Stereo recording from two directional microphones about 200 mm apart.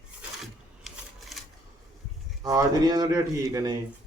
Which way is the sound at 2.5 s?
20° right (ahead or behind).